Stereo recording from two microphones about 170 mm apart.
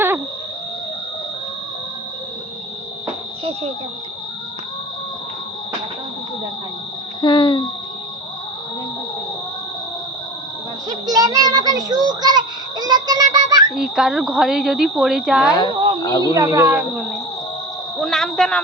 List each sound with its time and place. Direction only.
7.2 s a child's voice: 25° left (ahead or behind)
10.8 s child singing: 20° right (ahead or behind)
13.7 s speech: 5° right (ahead or behind)
15.7 s a sound: 30° right (ahead or behind)
16.0 s a child's voice: 25° left (ahead or behind)
16.3 s speech: 20° right (ahead or behind); by 18.6 s 5° left (ahead or behind)